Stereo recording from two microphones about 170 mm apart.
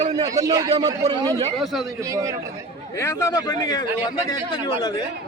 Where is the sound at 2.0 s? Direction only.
20° right (ahead or behind).